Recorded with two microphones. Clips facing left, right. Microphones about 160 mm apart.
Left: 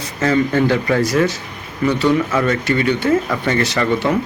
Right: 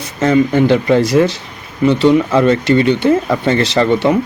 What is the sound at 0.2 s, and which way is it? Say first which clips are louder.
Speech: right 4 dB; 20° right (ahead or behind).